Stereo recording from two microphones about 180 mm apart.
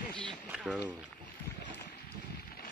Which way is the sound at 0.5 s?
5° right (ahead or behind).